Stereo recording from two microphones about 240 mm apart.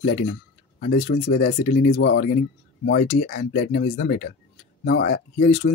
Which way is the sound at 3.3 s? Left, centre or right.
Left.